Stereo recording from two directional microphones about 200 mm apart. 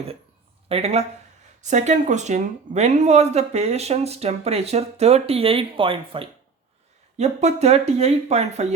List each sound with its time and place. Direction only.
0.7 s speech: 30° right (ahead or behind)